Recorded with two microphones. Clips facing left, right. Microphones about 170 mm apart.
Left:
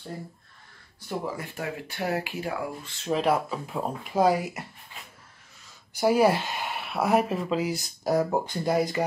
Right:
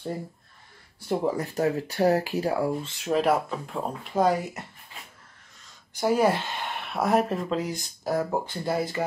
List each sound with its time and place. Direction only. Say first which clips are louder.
1.0 s speech: right 6 dB; 35° right (ahead or behind)
3.1 s speech: right 1 dB; centre (ahead or behind)
5.9 s speech: left 1 dB; 10° left (ahead or behind)
8.0 s speech: left 2 dB; 15° left (ahead or behind)